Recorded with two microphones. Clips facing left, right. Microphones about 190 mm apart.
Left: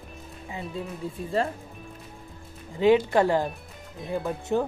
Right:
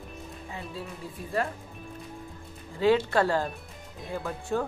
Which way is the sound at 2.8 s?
15° left (ahead or behind).